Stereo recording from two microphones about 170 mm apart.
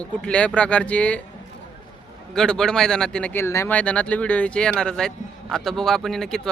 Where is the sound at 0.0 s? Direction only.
5° left (ahead or behind).